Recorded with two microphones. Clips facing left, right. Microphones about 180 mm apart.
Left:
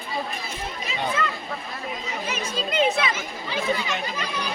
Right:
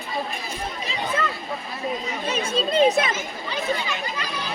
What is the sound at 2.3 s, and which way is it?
Speech, 30° right (ahead or behind).